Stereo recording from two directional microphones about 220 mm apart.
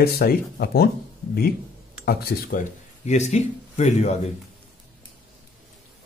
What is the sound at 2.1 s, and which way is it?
Speech, 45° left (ahead or behind).